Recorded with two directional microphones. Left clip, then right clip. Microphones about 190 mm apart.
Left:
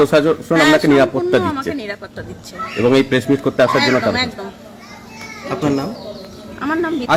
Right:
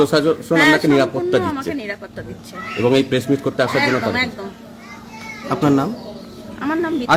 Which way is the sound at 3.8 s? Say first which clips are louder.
Left 2 dB; 5° right (ahead or behind).